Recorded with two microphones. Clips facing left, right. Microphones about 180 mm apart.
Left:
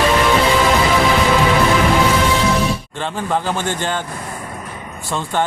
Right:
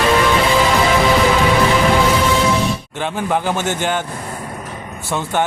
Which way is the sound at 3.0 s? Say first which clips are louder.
Right 2 dB; 10° right (ahead or behind).